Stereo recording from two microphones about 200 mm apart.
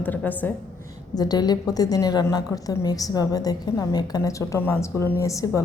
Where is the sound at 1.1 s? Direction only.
20° left (ahead or behind).